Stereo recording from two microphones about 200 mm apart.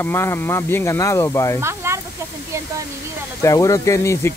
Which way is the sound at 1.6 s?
15° right (ahead or behind).